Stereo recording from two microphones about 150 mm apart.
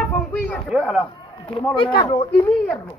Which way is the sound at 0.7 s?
Centre (ahead or behind).